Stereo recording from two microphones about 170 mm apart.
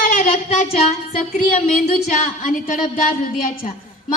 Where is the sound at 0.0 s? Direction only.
50° left (ahead or behind).